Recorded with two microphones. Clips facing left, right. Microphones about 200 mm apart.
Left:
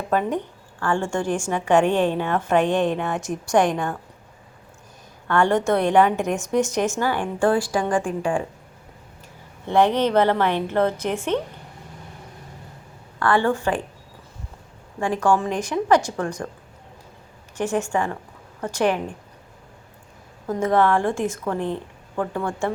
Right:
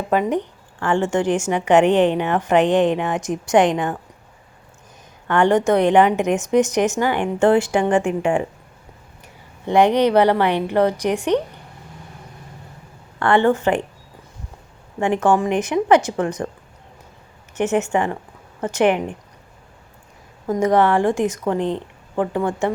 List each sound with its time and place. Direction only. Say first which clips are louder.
0.1 s a woman's voice: right 3 dB; 15° right (ahead or behind)
5.3 s a woman's voice: right 3 dB; 20° right (ahead or behind)
9.6 s a woman's voice: right 3 dB; 15° right (ahead or behind)
13.1 s a woman's voice: right 4 dB; 25° right (ahead or behind)
15.2 s a woman's voice: right 2 dB; 20° right (ahead or behind)
17.6 s a woman's voice: right 4 dB; 20° right (ahead or behind)
20.7 s a woman's voice: right 3 dB; 20° right (ahead or behind)